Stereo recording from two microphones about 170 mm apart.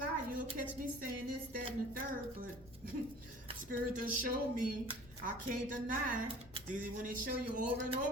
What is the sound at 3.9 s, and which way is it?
A woman's voice, 55° right (ahead or behind).